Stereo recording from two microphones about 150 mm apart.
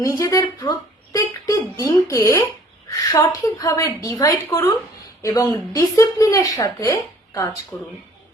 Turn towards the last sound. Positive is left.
turn(degrees=10)  # may be behind; listen again after turning